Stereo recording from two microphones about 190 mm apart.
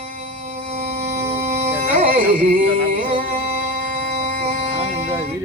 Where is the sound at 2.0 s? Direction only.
50° right (ahead or behind).